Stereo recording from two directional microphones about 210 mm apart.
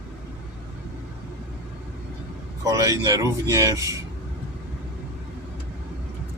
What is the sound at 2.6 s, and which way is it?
Speech, 15° right (ahead or behind).